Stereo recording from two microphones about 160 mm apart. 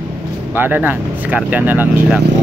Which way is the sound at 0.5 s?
10° right (ahead or behind).